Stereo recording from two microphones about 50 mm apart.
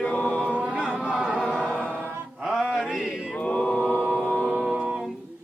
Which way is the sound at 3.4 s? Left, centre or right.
Left.